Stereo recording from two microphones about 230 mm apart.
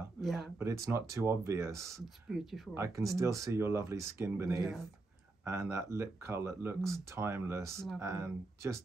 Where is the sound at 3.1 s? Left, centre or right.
Centre.